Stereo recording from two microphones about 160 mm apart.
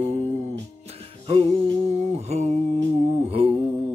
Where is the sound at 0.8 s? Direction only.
40° right (ahead or behind).